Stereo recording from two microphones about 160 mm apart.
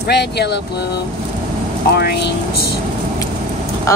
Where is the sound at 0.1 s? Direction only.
90° left.